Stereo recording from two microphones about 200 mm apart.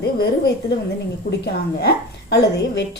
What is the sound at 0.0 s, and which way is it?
Speech, 55° left (ahead or behind).